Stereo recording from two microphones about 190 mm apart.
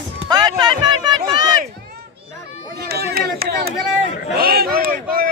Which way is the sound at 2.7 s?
55° right (ahead or behind).